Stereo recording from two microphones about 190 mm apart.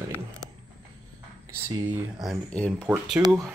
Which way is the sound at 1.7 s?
20° right (ahead or behind).